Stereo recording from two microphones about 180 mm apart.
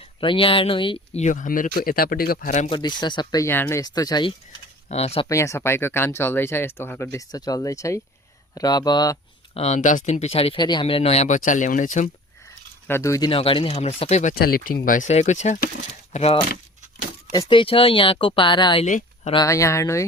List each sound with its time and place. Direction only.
0.2 s speech: 30° left (ahead or behind); by 2.6 s 45° left (ahead or behind)
2.6 s speech: 25° left (ahead or behind)
4.9 s speech: 35° left (ahead or behind)
5.3 s speech: 15° left (ahead or behind)
9.6 s speech: 40° left (ahead or behind)
12.5 s speech: 15° left (ahead or behind); by 14.3 s 40° left (ahead or behind)
14.3 s speech: 55° left (ahead or behind); by 18.9 s 25° left (ahead or behind)
18.9 s speech: 45° left (ahead or behind)
19.3 s speech: 20° left (ahead or behind)